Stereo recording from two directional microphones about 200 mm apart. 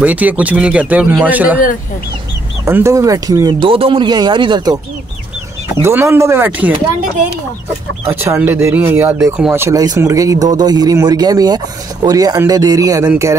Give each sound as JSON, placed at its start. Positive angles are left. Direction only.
{"t": 0.0, "sound": "speech", "side_deg": -10}
{"t": 2.6, "sound": "speech", "side_deg": -15}
{"t": 5.8, "sound": "speech", "side_deg": -10}
{"t": 8.1, "sound": "speech", "side_deg": -10}